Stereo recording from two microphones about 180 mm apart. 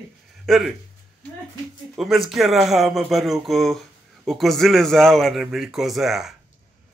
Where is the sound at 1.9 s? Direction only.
Centre (ahead or behind).